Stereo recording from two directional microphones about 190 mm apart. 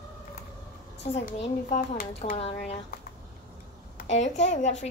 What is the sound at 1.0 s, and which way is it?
Speech, 35° left (ahead or behind).